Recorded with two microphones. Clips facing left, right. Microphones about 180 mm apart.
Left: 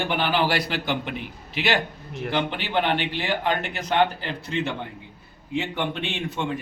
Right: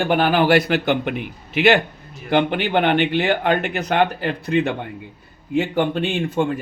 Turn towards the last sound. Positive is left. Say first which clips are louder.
# right 8 dB
turn(degrees=-45)  # may be behind; listen again after turning